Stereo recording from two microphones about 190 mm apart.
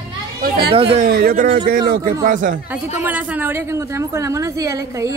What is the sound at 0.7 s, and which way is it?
Speech, 30° right (ahead or behind).